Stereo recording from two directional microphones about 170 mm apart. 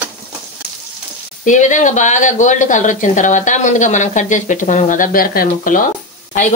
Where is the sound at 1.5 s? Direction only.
45° left (ahead or behind).